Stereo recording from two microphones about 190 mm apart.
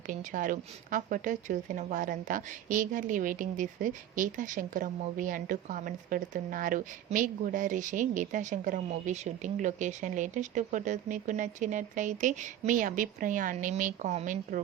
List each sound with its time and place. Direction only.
0.1 s a woman's voice: 45° right (ahead or behind)